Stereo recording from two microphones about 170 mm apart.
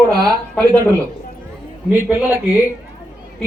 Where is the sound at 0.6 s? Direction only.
20° right (ahead or behind).